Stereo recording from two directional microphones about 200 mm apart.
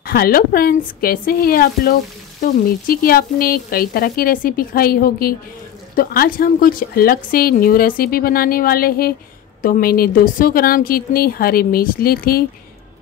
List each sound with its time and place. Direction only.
0.0 s a woman's voice: 50° left (ahead or behind)